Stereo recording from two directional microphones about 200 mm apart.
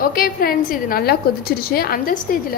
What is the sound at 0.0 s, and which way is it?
A woman's voice, 45° left (ahead or behind).